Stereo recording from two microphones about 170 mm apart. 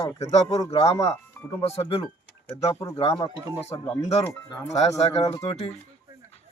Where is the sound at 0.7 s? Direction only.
35° left (ahead or behind).